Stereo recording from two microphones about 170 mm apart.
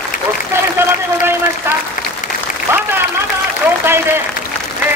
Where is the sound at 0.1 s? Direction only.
55° left (ahead or behind).